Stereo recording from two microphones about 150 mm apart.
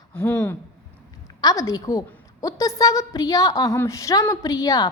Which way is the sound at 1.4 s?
25° left (ahead or behind).